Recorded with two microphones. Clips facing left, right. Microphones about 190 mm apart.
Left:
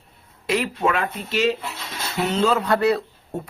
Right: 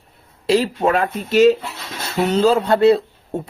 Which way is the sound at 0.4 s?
30° right (ahead or behind).